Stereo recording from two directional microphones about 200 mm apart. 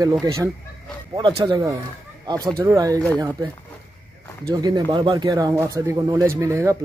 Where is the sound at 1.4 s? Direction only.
15° right (ahead or behind).